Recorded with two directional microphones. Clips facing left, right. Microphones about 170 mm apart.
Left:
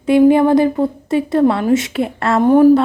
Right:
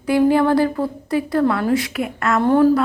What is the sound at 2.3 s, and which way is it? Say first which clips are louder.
Speech: left 5 dB; 15° left (ahead or behind).